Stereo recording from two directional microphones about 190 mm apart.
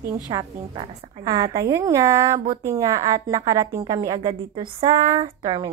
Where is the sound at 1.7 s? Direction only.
15° right (ahead or behind).